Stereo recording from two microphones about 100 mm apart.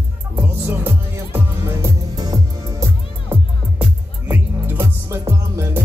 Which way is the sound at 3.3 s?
20° right (ahead or behind).